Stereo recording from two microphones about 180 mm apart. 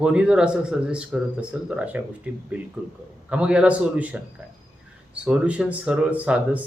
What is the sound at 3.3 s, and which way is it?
Speech, 5° right (ahead or behind).